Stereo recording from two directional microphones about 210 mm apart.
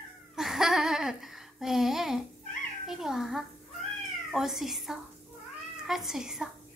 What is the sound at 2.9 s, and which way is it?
Cat, centre (ahead or behind).